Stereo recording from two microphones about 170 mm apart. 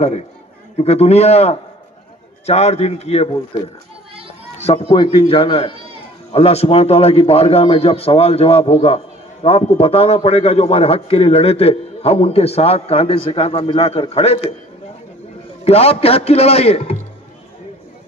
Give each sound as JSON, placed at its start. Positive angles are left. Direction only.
{"t": 0.7, "sound": "a man's voice", "side_deg": 40}
{"t": 4.6, "sound": "a man's voice", "side_deg": 35}
{"t": 15.6, "sound": "a man's voice", "side_deg": 35}